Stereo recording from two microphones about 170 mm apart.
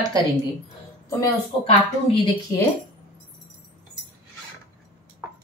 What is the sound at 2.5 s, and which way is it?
Speech, 15° left (ahead or behind).